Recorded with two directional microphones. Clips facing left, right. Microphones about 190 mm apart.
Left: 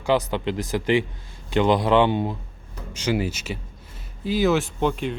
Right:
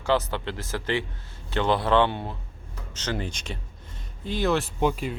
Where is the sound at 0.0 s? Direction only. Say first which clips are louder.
Left 3 dB; 15° left (ahead or behind).